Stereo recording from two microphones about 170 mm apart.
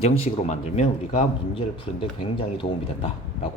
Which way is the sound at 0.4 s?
40° left (ahead or behind).